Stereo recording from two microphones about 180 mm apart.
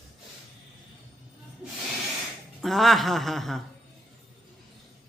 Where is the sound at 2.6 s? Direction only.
Centre (ahead or behind).